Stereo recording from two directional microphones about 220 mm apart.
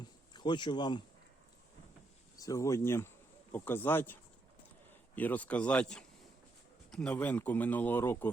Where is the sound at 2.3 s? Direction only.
15° left (ahead or behind).